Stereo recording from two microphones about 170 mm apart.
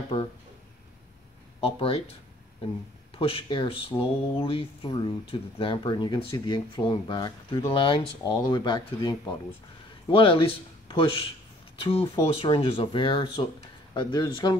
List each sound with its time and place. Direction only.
1.6 s speech: 35° left (ahead or behind)
3.2 s speech: 35° left (ahead or behind)